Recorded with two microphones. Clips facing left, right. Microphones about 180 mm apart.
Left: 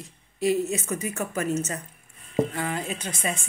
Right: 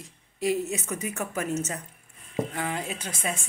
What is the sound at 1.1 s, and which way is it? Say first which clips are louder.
A woman's voice: left 2 dB; 10° right (ahead or behind).